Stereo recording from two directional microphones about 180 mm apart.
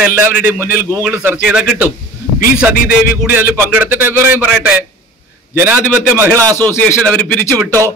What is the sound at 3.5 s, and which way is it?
Speech, 10° right (ahead or behind).